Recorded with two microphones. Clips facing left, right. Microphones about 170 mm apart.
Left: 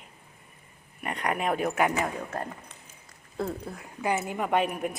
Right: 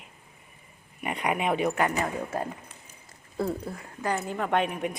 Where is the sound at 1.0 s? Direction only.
5° right (ahead or behind).